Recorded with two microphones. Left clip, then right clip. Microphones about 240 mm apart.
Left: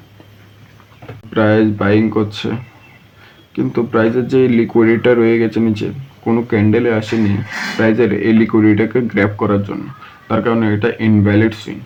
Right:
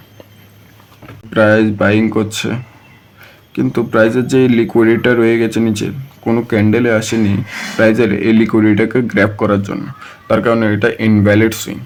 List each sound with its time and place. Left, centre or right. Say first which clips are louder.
1.3 s speech: right 3 dB; right